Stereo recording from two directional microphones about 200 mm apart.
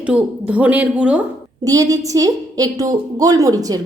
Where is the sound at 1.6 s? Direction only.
15° right (ahead or behind).